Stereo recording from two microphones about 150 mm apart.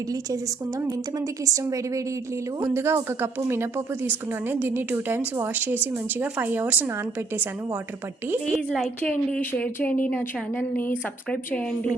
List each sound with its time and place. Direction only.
1.5 s a woman's voice: 20° right (ahead or behind)
8.4 s a woman's voice: centre (ahead or behind)
9.0 s a woman's voice: 10° left (ahead or behind)